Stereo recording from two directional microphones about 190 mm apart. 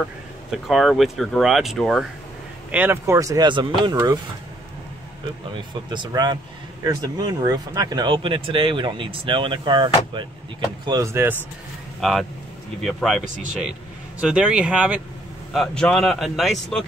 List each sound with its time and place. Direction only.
0.0 s speech: centre (ahead or behind)
5.5 s speech: 25° right (ahead or behind)
12.0 s speech: centre (ahead or behind)
14.2 s speech: 5° right (ahead or behind)